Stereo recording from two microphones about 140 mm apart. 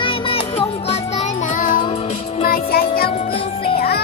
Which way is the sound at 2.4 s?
90° left.